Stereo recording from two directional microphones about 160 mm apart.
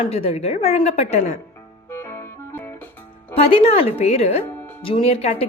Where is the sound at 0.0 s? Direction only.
40° left (ahead or behind).